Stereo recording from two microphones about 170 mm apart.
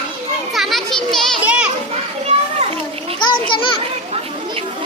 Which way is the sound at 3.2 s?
30° left (ahead or behind).